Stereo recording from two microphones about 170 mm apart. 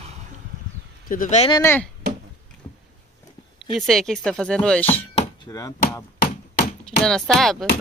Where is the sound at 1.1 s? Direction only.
55° left (ahead or behind).